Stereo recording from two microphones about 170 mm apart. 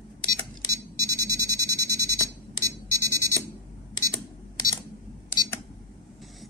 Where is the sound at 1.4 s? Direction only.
15° left (ahead or behind).